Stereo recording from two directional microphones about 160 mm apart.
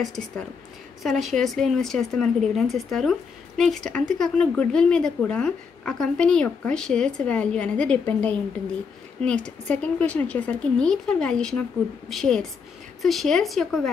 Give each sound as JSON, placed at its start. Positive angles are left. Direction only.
{"t": 1.0, "sound": "a woman's voice", "side_deg": 0}